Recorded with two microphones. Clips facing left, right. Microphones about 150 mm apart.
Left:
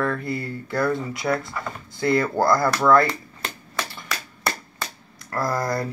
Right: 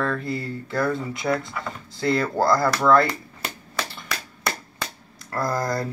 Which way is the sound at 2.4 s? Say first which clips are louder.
Right 1 dB; centre (ahead or behind).